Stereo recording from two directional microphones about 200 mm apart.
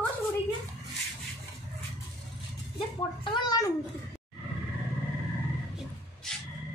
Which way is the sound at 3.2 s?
20° left (ahead or behind).